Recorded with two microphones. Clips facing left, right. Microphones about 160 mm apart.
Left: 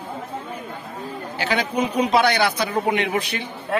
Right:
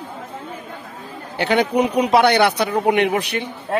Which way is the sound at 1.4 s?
65° right (ahead or behind).